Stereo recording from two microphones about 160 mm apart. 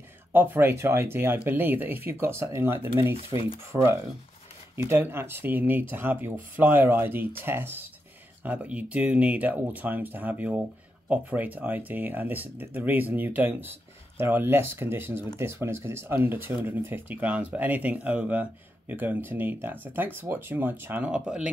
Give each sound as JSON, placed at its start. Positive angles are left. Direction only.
{"t": 0.3, "sound": "speech", "side_deg": -10}